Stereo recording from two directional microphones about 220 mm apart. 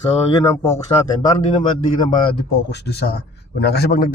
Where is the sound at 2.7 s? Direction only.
50° left (ahead or behind).